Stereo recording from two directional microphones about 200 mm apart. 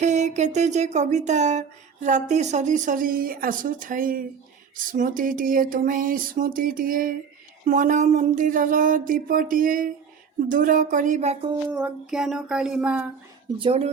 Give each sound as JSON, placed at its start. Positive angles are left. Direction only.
{"t": 0.0, "sound": "a sound", "side_deg": -35}
{"t": 11.7, "sound": "speech", "side_deg": -5}
{"t": 13.6, "sound": "speech", "side_deg": -30}